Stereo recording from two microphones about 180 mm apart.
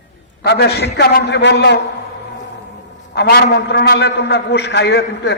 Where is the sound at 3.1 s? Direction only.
65° left (ahead or behind).